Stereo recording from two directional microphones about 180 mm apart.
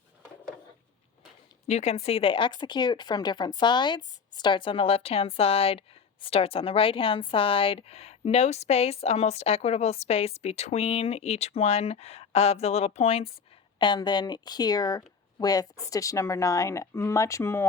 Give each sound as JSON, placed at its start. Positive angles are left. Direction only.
{"t": 1.6, "sound": "speech", "side_deg": 35}